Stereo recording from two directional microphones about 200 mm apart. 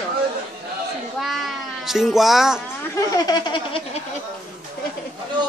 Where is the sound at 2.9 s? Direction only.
20° left (ahead or behind).